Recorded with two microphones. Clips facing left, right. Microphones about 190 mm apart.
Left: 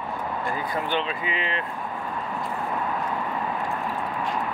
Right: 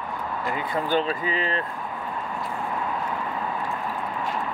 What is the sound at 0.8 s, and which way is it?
Speech, 40° right (ahead or behind).